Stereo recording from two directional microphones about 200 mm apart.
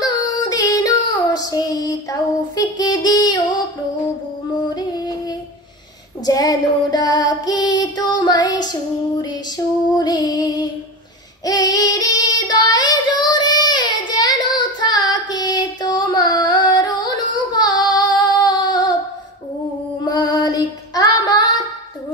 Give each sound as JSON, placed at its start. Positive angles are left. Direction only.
{"t": 0.0, "sound": "child singing", "side_deg": 20}
{"t": 4.7, "sound": "music", "side_deg": 20}
{"t": 6.2, "sound": "female singing", "side_deg": 20}
{"t": 9.9, "sound": "music", "side_deg": 20}
{"t": 11.4, "sound": "child singing", "side_deg": 20}
{"t": 20.1, "sound": "female singing", "side_deg": 20}